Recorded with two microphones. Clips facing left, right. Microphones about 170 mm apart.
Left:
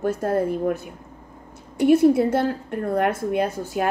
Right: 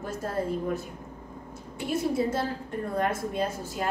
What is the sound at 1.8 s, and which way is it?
A woman's voice, 65° left (ahead or behind).